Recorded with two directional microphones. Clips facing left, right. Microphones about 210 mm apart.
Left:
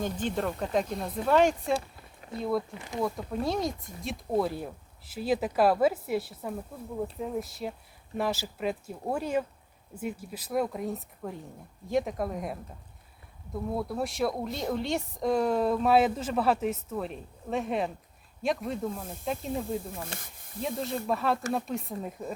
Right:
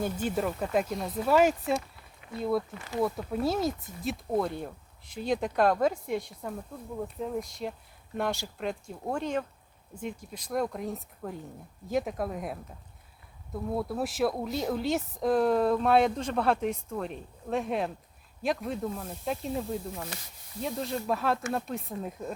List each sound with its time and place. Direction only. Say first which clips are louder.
0.0 s speech: right 1 dB; 10° right (ahead or behind)
2.7 s speech: right 1 dB; 20° left (ahead or behind)
3.0 s speech: right 2 dB; 5° right (ahead or behind)
20.1 s speech: left 2 dB; 50° left (ahead or behind)
20.6 s speech: even; centre (ahead or behind)